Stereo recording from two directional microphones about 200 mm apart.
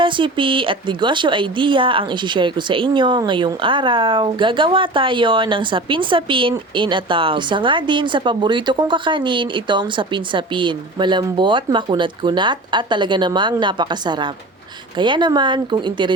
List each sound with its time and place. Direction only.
0.0 s a woman's voice: 25° right (ahead or behind)